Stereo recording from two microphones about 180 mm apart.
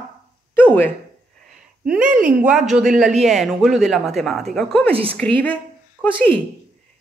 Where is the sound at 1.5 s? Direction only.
5° right (ahead or behind).